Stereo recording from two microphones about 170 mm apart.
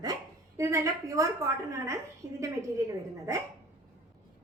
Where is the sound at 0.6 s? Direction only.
15° right (ahead or behind).